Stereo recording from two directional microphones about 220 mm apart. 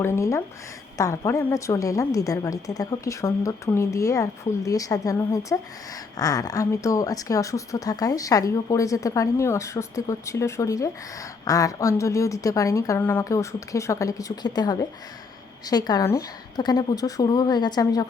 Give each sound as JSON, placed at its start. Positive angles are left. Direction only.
{"t": 0.0, "sound": "speech", "side_deg": 10}